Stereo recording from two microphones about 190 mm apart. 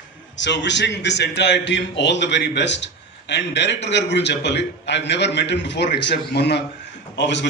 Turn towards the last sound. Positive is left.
turn(degrees=70)  # may be behind; listen again after turning